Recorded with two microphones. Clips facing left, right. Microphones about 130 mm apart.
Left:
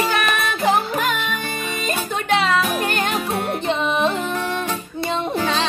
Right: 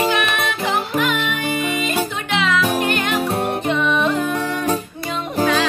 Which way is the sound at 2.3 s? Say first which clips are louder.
Left 2 dB; 40° left (ahead or behind).